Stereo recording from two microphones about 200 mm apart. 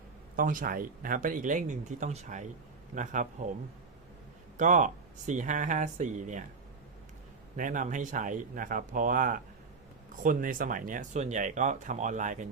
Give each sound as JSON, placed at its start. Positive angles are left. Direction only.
{"t": 0.3, "sound": "speech", "side_deg": -45}
{"t": 4.5, "sound": "speech", "side_deg": -40}
{"t": 7.5, "sound": "speech", "side_deg": -40}